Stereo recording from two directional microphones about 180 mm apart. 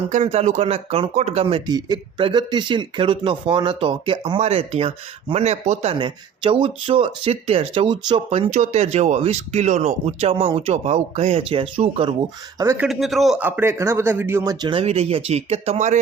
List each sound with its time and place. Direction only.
0.1 s speech: 40° right (ahead or behind)
12.5 s speech: 15° right (ahead or behind)
12.9 s speech: centre (ahead or behind); by 16.0 s 40° right (ahead or behind)